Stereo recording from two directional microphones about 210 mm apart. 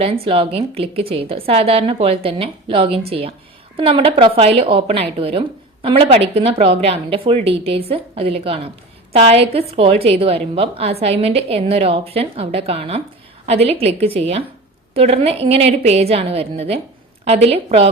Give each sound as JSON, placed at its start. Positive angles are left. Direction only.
{"t": 0.0, "sound": "a woman's voice", "side_deg": -25}